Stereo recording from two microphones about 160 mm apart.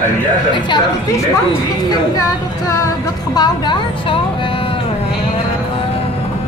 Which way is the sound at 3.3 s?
25° left (ahead or behind).